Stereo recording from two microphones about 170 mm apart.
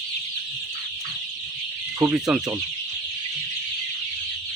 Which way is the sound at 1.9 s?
15° right (ahead or behind).